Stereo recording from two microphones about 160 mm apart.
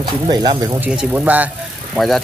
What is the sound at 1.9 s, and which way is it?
Speech, centre (ahead or behind).